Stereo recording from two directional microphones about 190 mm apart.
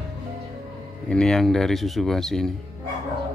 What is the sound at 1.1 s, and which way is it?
Speech, 5° left (ahead or behind).